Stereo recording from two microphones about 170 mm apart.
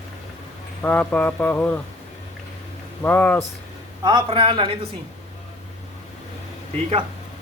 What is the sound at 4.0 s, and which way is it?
Speech, 25° right (ahead or behind).